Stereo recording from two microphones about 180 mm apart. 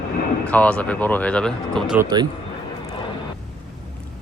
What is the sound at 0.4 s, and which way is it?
Speech, 10° left (ahead or behind).